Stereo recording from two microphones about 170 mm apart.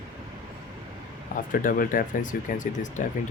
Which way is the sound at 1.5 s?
55° left (ahead or behind).